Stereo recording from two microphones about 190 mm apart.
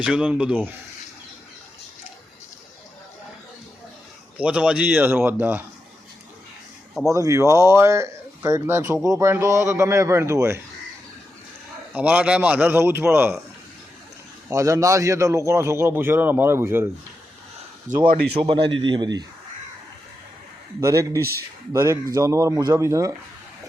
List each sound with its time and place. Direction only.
0.0 s speech: 5° right (ahead or behind)
4.4 s speech: 5° right (ahead or behind)
7.1 s speech: 15° right (ahead or behind)
11.9 s speech: 5° right (ahead or behind)
14.5 s speech: 15° right (ahead or behind)
17.9 s speech: 40° right (ahead or behind)
18.3 s a man's voice: 25° right (ahead or behind)
20.8 s speech: 15° right (ahead or behind)